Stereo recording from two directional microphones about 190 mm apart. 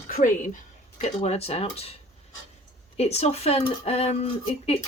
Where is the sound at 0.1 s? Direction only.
45° left (ahead or behind).